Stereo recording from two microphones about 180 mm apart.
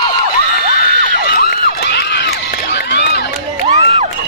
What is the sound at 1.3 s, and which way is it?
Crowd, 60° left (ahead or behind).